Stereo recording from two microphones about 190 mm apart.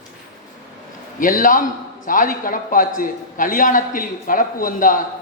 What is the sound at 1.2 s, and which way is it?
A man's voice, 45° left (ahead or behind).